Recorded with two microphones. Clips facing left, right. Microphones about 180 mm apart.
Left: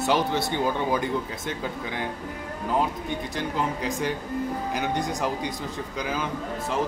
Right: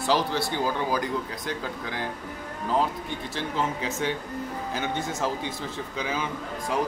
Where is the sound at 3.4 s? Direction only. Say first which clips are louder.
Even; 15° left (ahead or behind).